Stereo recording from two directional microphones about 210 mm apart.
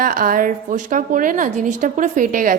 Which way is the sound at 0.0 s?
40° right (ahead or behind).